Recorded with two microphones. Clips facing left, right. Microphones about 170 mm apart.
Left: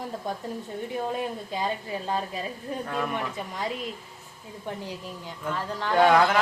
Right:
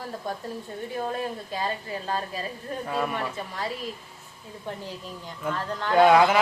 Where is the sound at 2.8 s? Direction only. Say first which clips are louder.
Right 3 dB; 5° right (ahead or behind).